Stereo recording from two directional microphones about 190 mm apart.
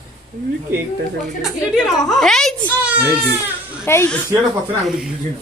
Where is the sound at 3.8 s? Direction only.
15° left (ahead or behind).